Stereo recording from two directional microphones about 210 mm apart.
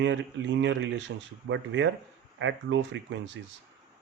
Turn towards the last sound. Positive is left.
turn(degrees=-60)  # may be behind; listen again after turning